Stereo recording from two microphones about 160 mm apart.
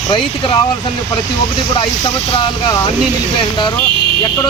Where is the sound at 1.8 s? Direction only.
30° left (ahead or behind).